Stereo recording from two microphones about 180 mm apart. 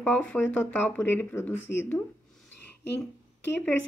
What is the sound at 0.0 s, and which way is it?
Speech, 10° left (ahead or behind).